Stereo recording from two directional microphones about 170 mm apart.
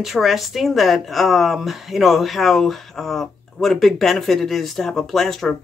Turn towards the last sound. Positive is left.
turn(degrees=0)  # may be behind; listen again after turning